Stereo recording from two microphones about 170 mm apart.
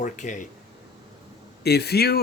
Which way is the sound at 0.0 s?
45° left (ahead or behind).